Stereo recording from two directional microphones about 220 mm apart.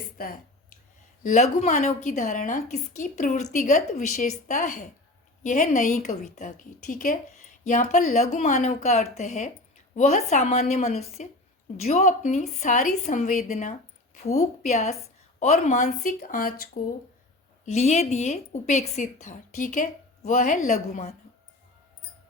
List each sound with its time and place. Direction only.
0.2 s a sound: 40° left (ahead or behind)
1.2 s a woman's voice: 30° left (ahead or behind)
17.7 s a woman's voice: 30° left (ahead or behind)